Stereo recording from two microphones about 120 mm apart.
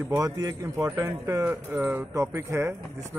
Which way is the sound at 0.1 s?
30° right (ahead or behind).